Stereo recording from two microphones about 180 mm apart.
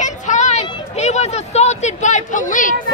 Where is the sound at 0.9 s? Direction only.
40° left (ahead or behind).